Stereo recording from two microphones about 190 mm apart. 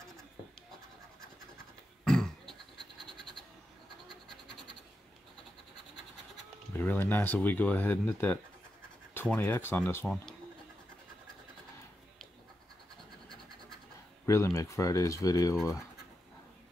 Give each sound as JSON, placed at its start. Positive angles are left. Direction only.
{"t": 2.0, "sound": "a sound", "side_deg": 5}
{"t": 4.1, "sound": "scratch", "side_deg": 0}
{"t": 6.7, "sound": "speech", "side_deg": 10}
{"t": 14.2, "sound": "speech", "side_deg": 15}